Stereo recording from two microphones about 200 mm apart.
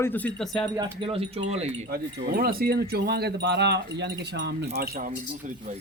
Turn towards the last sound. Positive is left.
turn(degrees=-45)  # may be behind; listen again after turning